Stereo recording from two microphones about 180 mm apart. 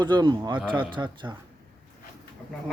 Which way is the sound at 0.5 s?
10° right (ahead or behind).